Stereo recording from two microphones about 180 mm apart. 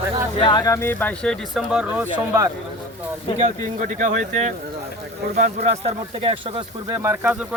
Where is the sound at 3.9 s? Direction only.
45° right (ahead or behind).